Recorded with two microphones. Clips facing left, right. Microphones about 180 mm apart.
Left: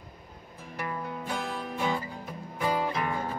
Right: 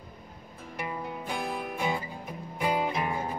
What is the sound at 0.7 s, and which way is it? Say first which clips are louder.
Music: left 1 dB; 15° right (ahead or behind).